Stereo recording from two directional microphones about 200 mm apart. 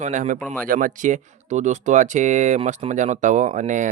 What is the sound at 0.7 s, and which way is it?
Speech, 40° right (ahead or behind).